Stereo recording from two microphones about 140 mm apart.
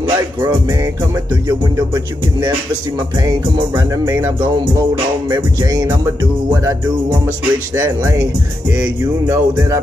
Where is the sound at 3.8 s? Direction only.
20° right (ahead or behind).